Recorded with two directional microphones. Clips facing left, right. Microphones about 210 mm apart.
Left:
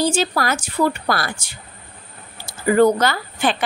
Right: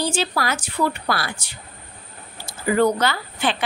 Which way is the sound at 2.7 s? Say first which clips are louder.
Left 4 dB; 45° left (ahead or behind).